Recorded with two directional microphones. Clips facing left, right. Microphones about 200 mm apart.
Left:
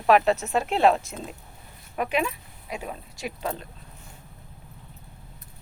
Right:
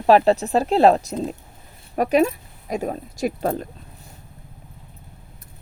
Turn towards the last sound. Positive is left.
turn(degrees=-50)  # may be behind; listen again after turning